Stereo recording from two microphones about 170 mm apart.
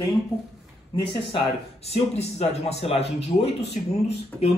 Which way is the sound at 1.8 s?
40° left (ahead or behind).